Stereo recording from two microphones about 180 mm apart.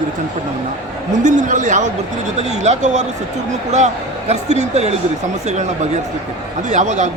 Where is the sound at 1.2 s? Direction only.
45° right (ahead or behind).